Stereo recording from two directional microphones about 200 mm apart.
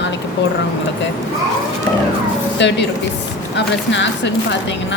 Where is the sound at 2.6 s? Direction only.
60° left (ahead or behind).